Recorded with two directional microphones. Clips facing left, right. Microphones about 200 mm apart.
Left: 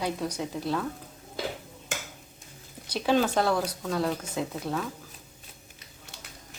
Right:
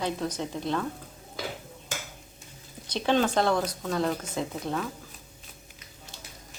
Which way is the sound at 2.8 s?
5° left (ahead or behind).